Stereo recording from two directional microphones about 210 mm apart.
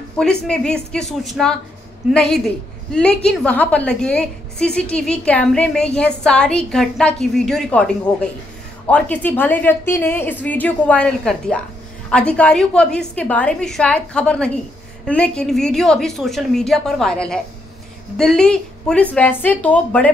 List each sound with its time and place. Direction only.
0.2 s a woman's voice: 5° left (ahead or behind)